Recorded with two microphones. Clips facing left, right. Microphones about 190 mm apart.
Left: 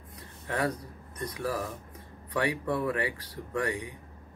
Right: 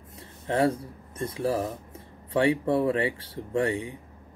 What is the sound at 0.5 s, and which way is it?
Speech, 25° right (ahead or behind).